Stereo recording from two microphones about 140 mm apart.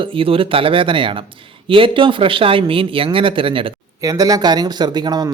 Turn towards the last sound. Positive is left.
turn(degrees=-30)  # may be behind; listen again after turning